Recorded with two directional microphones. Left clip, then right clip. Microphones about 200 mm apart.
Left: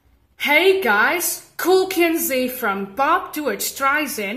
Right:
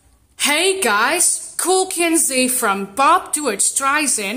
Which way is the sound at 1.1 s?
25° right (ahead or behind).